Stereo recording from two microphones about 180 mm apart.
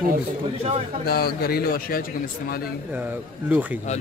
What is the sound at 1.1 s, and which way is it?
Speech, 55° left (ahead or behind).